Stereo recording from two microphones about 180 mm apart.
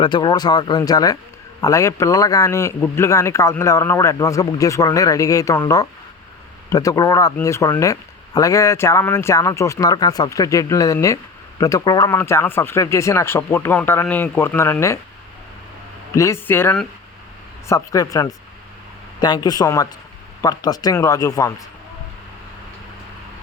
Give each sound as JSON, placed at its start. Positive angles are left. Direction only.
{"t": 0.0, "sound": "speech", "side_deg": 25}
{"t": 16.1, "sound": "speech", "side_deg": 15}